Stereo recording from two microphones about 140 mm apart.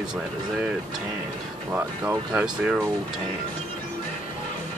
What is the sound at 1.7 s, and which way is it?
Speech, 15° right (ahead or behind).